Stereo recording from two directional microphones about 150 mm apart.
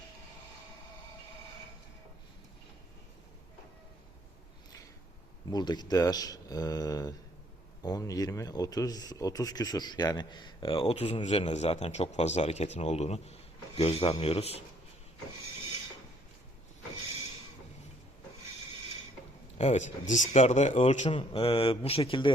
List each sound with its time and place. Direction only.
5.5 s speech: 30° left (ahead or behind)
19.5 s speech: 50° left (ahead or behind)
21.1 s speech: 35° left (ahead or behind)